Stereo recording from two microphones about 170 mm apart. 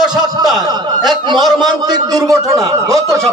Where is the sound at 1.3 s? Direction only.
Centre (ahead or behind).